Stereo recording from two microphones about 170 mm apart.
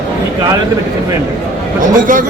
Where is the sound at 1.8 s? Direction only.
50° right (ahead or behind).